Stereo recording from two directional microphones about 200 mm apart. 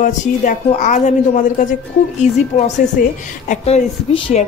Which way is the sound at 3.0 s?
45° left (ahead or behind).